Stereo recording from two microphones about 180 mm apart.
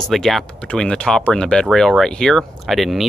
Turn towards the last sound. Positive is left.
turn(degrees=0)  # may be behind; listen again after turning